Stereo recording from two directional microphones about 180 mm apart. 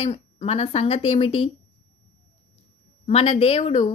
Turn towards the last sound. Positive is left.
turn(degrees=35)  # may be behind; listen again after turning